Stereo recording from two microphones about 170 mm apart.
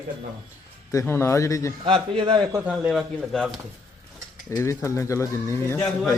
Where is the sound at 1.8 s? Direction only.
30° right (ahead or behind).